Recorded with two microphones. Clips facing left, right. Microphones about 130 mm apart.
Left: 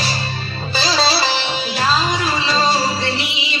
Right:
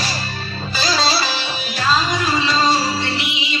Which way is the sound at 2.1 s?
35° left (ahead or behind).